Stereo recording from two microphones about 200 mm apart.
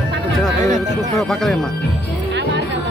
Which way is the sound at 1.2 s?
Centre (ahead or behind).